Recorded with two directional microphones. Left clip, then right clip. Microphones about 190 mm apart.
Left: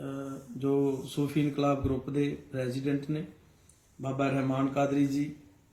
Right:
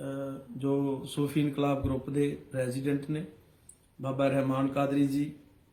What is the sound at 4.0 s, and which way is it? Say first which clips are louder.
Speech: right 2 dB; 15° right (ahead or behind).